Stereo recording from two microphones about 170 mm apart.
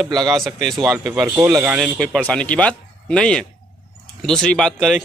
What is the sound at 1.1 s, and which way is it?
Speech, 15° right (ahead or behind).